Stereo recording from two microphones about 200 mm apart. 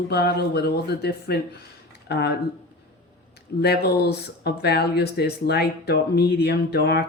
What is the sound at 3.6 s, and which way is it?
Speech, 55° left (ahead or behind).